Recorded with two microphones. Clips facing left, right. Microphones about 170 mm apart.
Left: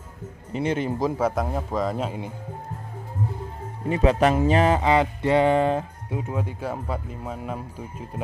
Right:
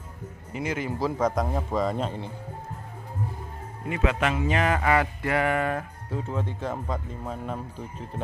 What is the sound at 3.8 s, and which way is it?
Speech, 35° left (ahead or behind).